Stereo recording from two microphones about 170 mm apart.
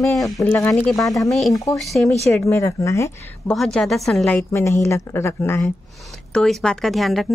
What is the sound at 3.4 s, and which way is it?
Speech, 5° left (ahead or behind).